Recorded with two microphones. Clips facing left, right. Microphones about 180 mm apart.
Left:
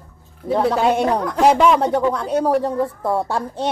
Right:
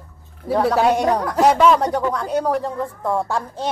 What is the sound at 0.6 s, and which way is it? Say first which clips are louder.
Speech: right 1 dB; centre (ahead or behind).